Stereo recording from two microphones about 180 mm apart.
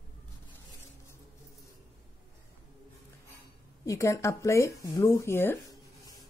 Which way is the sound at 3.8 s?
15° left (ahead or behind).